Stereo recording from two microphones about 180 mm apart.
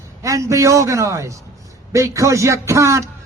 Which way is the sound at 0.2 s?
15° right (ahead or behind).